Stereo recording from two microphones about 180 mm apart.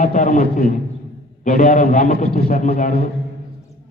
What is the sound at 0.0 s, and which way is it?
A man's voice, 45° left (ahead or behind).